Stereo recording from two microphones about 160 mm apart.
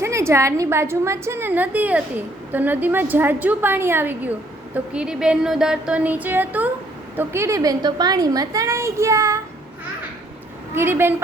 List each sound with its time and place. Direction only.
0.0 s a woman's voice: 15° right (ahead or behind)
10.8 s a woman's voice: 15° right (ahead or behind)